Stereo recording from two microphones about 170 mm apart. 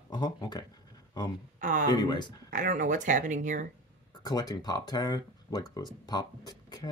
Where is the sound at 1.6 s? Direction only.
50° right (ahead or behind).